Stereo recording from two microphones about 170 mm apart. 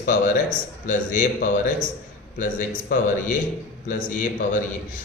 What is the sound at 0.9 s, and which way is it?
A man's voice, 50° left (ahead or behind).